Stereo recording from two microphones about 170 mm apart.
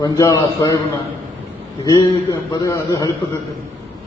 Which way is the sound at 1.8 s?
20° left (ahead or behind).